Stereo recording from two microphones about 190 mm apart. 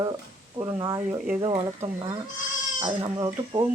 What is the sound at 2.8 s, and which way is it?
Speech, 25° right (ahead or behind).